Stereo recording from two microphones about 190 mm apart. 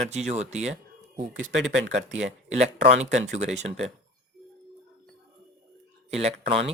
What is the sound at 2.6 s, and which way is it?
Speech, 35° right (ahead or behind).